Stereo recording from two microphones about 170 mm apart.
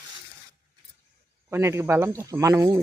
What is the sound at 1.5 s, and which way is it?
Speech, 15° right (ahead or behind).